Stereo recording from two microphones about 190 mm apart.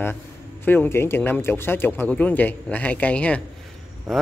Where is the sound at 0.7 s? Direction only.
10° left (ahead or behind).